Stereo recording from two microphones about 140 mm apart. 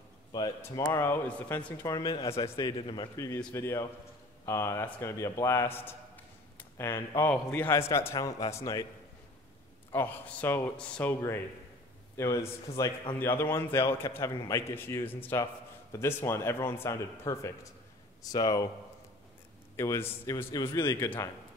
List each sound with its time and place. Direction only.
0.6 s a man's voice: 20° left (ahead or behind)
2.2 s a man's voice: 45° left (ahead or behind)
3.5 s a man's voice: 20° left (ahead or behind)
9.9 s a man's voice: 15° left (ahead or behind)
19.8 s a man's voice: 20° left (ahead or behind)
20.5 s a man's voice: 30° left (ahead or behind)